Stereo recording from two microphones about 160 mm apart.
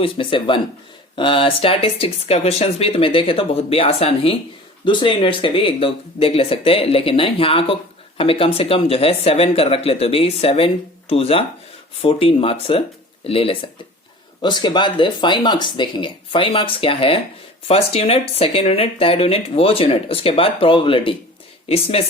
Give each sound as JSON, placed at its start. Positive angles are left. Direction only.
{"t": 0.0, "sound": "speech", "side_deg": 35}